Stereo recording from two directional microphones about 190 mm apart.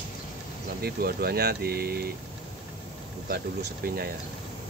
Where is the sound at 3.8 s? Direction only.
50° right (ahead or behind).